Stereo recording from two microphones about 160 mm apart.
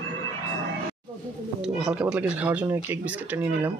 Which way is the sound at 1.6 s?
5° right (ahead or behind).